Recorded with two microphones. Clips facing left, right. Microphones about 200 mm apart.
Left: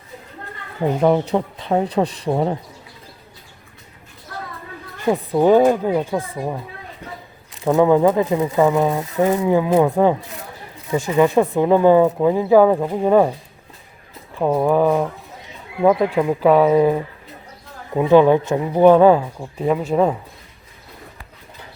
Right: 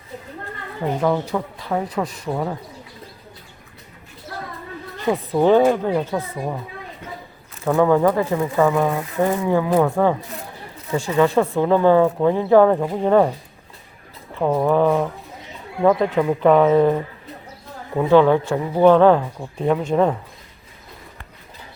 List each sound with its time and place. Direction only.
1.0 s speech: 20° left (ahead or behind)
5.0 s speech: 15° left (ahead or behind)
7.6 s speech: 20° left (ahead or behind)
14.3 s speech: 10° left (ahead or behind)